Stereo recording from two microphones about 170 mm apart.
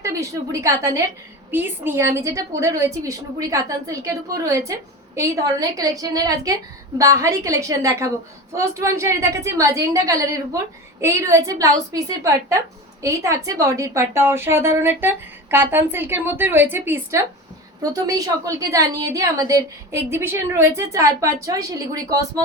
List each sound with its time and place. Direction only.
0.0 s a woman's voice: 20° right (ahead or behind)